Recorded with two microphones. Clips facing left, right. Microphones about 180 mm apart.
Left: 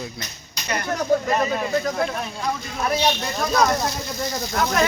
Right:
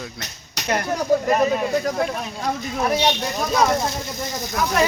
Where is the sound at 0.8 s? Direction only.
10° right (ahead or behind).